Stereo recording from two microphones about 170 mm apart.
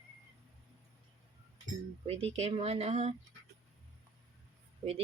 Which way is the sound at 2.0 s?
35° right (ahead or behind).